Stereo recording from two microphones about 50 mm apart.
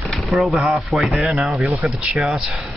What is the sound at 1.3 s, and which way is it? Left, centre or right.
Speech, centre.